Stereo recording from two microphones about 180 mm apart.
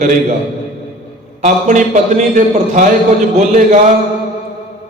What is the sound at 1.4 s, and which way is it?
A man's voice, 45° right (ahead or behind).